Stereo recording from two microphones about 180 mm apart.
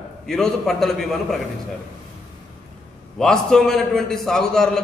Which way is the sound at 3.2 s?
5° left (ahead or behind).